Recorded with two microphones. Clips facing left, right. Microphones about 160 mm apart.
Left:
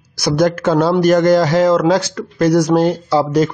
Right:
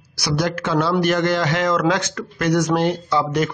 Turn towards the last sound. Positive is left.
turn(degrees=35)  # may be behind; listen again after turning